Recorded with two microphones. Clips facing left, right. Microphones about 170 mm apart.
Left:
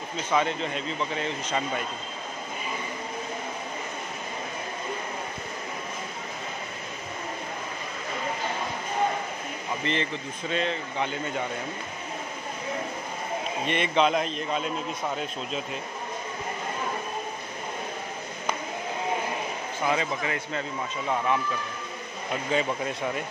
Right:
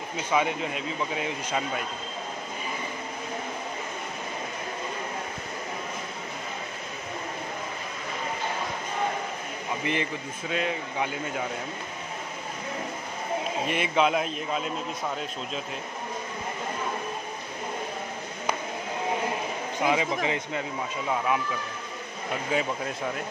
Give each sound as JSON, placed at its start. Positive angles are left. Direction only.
{"t": 0.3, "sound": "speech", "side_deg": -10}
{"t": 9.8, "sound": "speech", "side_deg": -10}
{"t": 13.7, "sound": "a man's voice", "side_deg": -5}
{"t": 19.9, "sound": "speech", "side_deg": -15}
{"t": 22.5, "sound": "a man's voice", "side_deg": 0}